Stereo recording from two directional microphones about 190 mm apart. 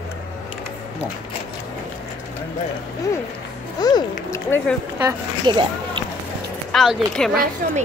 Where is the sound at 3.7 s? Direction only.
20° left (ahead or behind).